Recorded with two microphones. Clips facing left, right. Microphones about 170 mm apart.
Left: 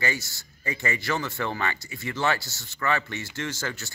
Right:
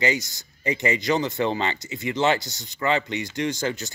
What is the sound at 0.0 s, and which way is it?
Speech, 20° right (ahead or behind).